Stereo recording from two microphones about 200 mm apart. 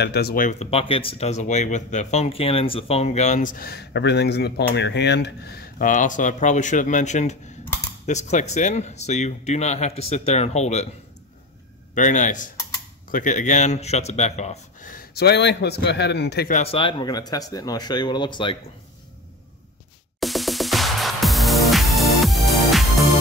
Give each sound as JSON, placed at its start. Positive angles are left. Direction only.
{"t": 0.0, "sound": "speech", "side_deg": 55}
{"t": 11.9, "sound": "speech", "side_deg": 40}
{"t": 16.5, "sound": "speech", "side_deg": 30}
{"t": 20.2, "sound": "music", "side_deg": 0}